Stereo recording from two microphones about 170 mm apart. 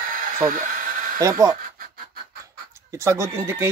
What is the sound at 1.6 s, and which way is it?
Pant, 60° right (ahead or behind).